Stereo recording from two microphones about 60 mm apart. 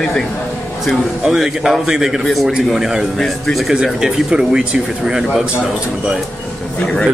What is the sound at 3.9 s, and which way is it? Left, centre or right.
A man's voice, centre.